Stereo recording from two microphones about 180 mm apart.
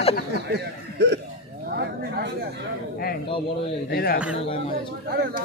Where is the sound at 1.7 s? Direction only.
60° right (ahead or behind).